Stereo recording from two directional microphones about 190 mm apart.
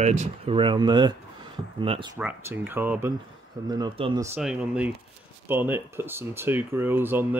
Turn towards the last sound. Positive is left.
turn(degrees=-10)  # may be behind; listen again after turning